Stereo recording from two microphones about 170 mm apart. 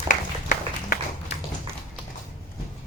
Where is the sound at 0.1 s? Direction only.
50° left (ahead or behind).